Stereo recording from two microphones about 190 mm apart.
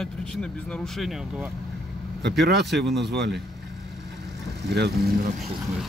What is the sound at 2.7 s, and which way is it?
Speech, 65° right (ahead or behind).